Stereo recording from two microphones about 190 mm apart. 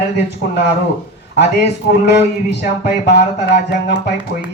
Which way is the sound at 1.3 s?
60° left (ahead or behind).